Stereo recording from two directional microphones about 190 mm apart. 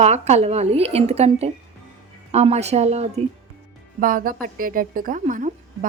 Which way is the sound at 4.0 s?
50° right (ahead or behind).